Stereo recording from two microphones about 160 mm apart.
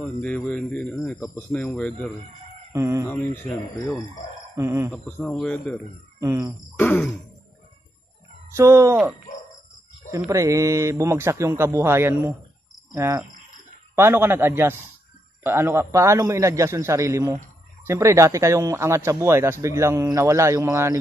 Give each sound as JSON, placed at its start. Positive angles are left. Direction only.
{"t": 0.0, "sound": "speech", "side_deg": 10}
{"t": 2.7, "sound": "speech", "side_deg": -20}
{"t": 3.1, "sound": "speech", "side_deg": 10}
{"t": 4.6, "sound": "speech", "side_deg": -20}
{"t": 4.9, "sound": "speech", "side_deg": 5}
{"t": 8.5, "sound": "speech", "side_deg": -15}
{"t": 10.1, "sound": "speech", "side_deg": -20}